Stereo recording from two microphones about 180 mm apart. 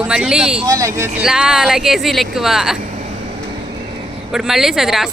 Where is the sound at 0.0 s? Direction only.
5° right (ahead or behind).